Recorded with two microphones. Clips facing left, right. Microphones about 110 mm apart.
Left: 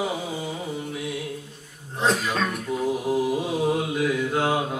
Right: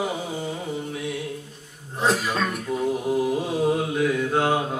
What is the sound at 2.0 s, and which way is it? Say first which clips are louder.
Throat clearing: even; 5° right (ahead or behind).